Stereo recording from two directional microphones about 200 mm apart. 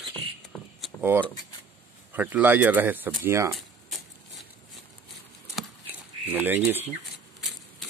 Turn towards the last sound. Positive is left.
turn(degrees=0)  # may be behind; listen again after turning